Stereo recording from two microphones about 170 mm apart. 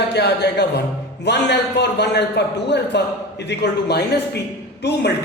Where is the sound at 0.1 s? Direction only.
75° left (ahead or behind).